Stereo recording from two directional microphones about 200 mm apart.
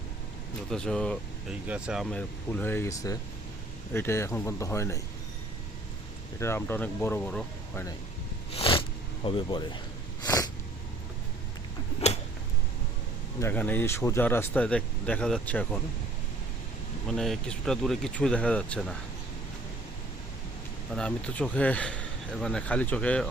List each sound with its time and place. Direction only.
0.7 s a man's voice: 5° left (ahead or behind)
6.4 s speech: 10° left (ahead or behind)
8.5 s a sound: 30° left (ahead or behind)
9.2 s speech: 25° left (ahead or behind)
10.2 s sneeze: 20° left (ahead or behind)
13.4 s speech: 10° left (ahead or behind)
17.1 s a man's voice: centre (ahead or behind)
20.9 s a man's voice: 5° left (ahead or behind)